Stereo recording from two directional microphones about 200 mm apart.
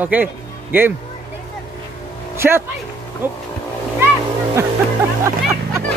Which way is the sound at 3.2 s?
10° right (ahead or behind).